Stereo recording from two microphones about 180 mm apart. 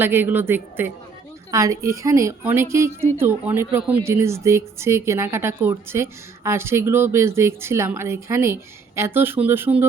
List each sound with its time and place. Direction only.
0.0 s a woman's voice: 10° right (ahead or behind)